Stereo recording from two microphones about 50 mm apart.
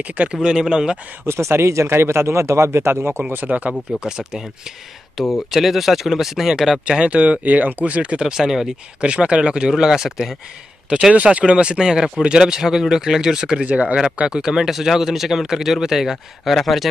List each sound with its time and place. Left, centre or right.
0.3 s speech: centre
1.2 s speech: right
3.9 s speech: centre
6.9 s speech: right
8.2 s speech: centre
9.0 s speech: right; by 10.3 s centre
10.9 s speech: centre
13.7 s speech: right
13.9 s speech: centre